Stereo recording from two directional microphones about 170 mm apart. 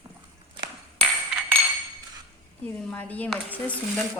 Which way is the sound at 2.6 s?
10° left (ahead or behind).